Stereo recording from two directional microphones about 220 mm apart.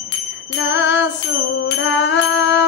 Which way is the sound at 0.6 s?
55° left (ahead or behind).